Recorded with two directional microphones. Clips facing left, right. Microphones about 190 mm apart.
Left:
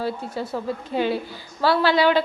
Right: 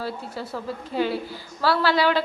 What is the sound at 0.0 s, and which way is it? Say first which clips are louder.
A woman's voice: left 4 dB; 20° left (ahead or behind).